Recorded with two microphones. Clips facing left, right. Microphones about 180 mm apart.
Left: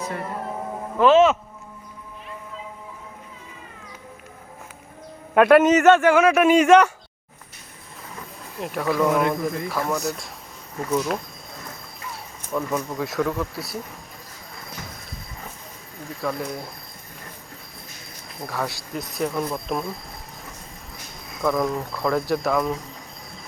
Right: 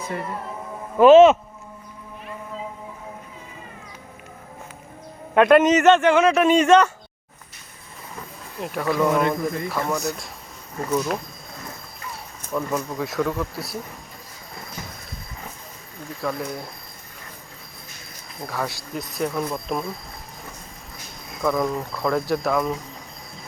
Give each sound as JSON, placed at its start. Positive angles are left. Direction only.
{"t": 0.0, "sound": "speech", "side_deg": 0}
{"t": 0.9, "sound": "speech", "side_deg": -20}
{"t": 5.3, "sound": "a man's voice", "side_deg": 5}
{"t": 8.5, "sound": "speech", "side_deg": 0}
{"t": 10.8, "sound": "a sound", "side_deg": 0}
{"t": 12.0, "sound": "speech", "side_deg": 0}
{"t": 16.0, "sound": "speech", "side_deg": 0}
{"t": 18.3, "sound": "speech", "side_deg": 0}
{"t": 21.2, "sound": "speech", "side_deg": 0}